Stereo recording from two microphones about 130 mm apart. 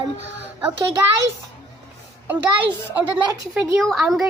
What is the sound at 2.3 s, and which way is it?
Speech, 10° right (ahead or behind).